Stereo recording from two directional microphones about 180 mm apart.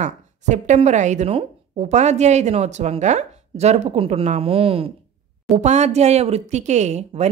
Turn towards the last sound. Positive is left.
turn(degrees=-40)  # may be behind; listen again after turning